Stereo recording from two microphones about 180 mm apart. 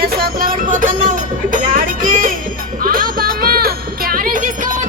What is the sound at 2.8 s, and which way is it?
Music, 50° right (ahead or behind).